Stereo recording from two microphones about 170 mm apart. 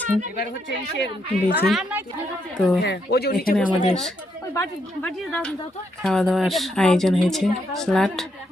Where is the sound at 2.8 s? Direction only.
80° left.